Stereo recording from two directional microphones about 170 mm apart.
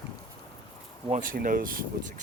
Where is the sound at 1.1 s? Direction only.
55° right (ahead or behind).